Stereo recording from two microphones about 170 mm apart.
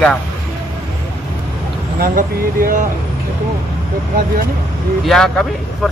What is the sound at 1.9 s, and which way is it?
Speech, 55° right (ahead or behind).